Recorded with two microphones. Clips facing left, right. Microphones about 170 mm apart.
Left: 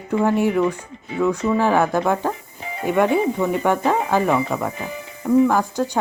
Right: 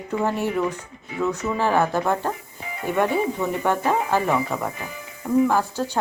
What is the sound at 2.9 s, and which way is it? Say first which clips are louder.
Speech: left 4 dB; 10° left (ahead or behind).